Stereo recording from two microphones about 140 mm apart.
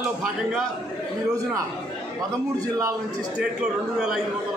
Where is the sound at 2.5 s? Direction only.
25° right (ahead or behind).